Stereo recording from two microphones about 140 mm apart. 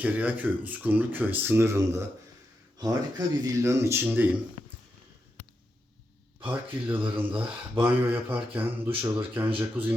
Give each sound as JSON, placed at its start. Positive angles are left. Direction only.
{"t": 0.0, "sound": "speech", "side_deg": -10}
{"t": 6.4, "sound": "speech", "side_deg": -10}